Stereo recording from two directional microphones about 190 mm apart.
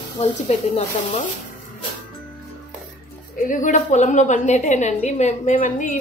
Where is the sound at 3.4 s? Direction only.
40° left (ahead or behind).